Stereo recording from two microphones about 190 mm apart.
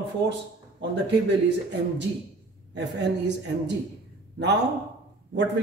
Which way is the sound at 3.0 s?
65° right (ahead or behind).